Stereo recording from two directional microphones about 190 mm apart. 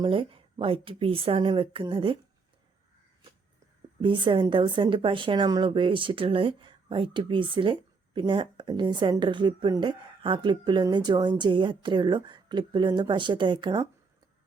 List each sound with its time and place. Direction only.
0.0 s a woman's voice: 30° right (ahead or behind)
4.0 s a woman's voice: 25° right (ahead or behind)